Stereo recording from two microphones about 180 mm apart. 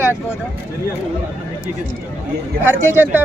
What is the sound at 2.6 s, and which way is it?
Speech, 10° right (ahead or behind).